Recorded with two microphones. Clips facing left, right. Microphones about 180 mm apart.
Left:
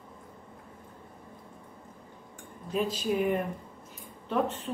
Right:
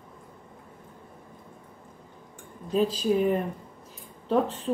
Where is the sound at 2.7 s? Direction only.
35° right (ahead or behind).